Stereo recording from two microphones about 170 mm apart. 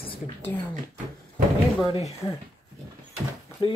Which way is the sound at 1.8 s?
35° left (ahead or behind).